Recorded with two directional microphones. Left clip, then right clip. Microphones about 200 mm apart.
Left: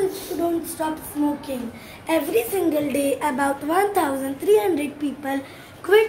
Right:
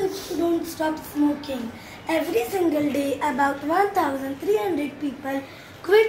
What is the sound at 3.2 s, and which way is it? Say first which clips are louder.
Speech: even; 35° left (ahead or behind).